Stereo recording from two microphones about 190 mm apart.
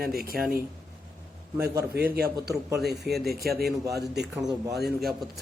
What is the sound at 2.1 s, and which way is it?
Speech, 55° right (ahead or behind).